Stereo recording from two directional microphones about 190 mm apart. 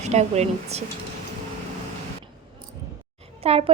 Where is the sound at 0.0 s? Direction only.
35° right (ahead or behind).